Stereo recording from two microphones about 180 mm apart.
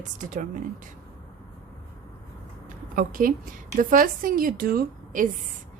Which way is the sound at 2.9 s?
50° right (ahead or behind).